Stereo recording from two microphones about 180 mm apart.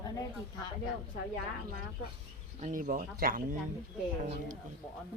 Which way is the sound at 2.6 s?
50° right (ahead or behind).